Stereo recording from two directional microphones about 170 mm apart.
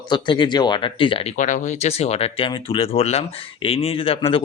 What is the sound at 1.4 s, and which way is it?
Speech, 50° left (ahead or behind).